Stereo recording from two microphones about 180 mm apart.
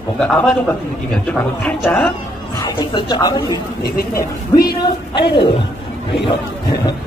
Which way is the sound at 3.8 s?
55° left (ahead or behind).